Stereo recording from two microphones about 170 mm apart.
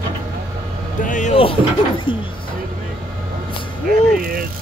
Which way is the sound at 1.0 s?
45° left (ahead or behind).